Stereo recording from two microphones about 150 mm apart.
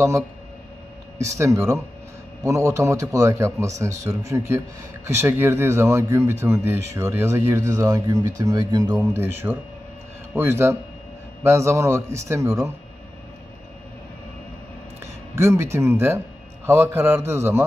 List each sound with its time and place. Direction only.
1.1 s a man's voice: 20° right (ahead or behind)
15.0 s speech: 20° right (ahead or behind)